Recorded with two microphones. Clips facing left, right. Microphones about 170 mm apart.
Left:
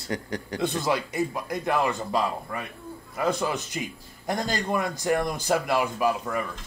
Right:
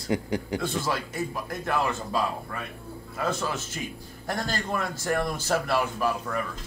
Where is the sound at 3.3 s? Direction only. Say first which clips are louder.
Left 4 dB; 15° left (ahead or behind).